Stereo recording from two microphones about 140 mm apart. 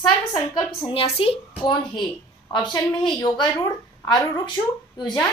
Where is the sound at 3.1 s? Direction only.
35° left (ahead or behind).